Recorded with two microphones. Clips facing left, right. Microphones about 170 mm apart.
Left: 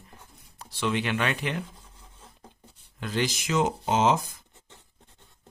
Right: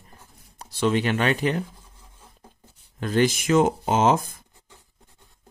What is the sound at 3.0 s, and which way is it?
Speech, 50° right (ahead or behind).